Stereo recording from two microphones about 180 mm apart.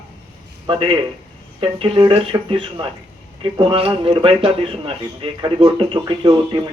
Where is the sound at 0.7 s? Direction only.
30° right (ahead or behind).